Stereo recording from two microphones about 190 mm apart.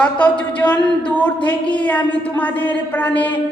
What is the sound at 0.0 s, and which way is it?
A woman's voice, 5° left (ahead or behind).